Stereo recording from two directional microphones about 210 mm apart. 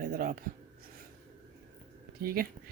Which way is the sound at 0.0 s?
40° right (ahead or behind).